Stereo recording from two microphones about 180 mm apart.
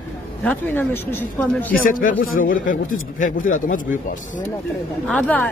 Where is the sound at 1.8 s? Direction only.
50° left (ahead or behind).